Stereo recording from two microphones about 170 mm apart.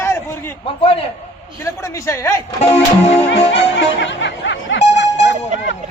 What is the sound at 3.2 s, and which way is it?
Speech, 90° left.